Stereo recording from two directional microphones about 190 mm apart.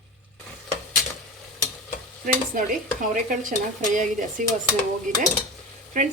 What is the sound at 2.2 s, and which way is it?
Speech, 45° right (ahead or behind).